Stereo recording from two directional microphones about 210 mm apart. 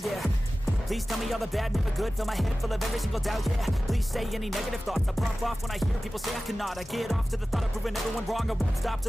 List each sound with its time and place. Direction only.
0.9 s music: centre (ahead or behind)